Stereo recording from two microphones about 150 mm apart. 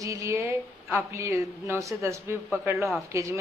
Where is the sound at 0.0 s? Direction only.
20° right (ahead or behind).